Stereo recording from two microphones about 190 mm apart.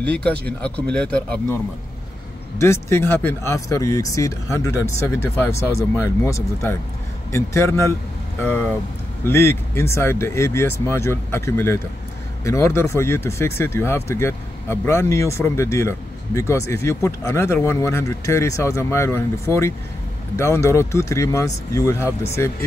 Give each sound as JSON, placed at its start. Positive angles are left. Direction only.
{"t": 0.2, "sound": "speech", "side_deg": 5}
{"t": 2.6, "sound": "speech", "side_deg": 15}